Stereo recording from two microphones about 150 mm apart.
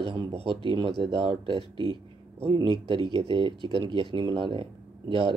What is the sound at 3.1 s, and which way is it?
Speech, 35° right (ahead or behind).